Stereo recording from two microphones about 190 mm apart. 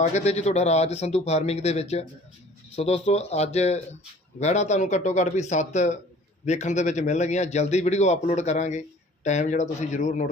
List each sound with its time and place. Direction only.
0.0 s a man's voice: 35° left (ahead or behind)